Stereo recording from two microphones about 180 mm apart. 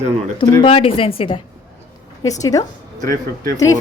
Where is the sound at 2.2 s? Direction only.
20° left (ahead or behind).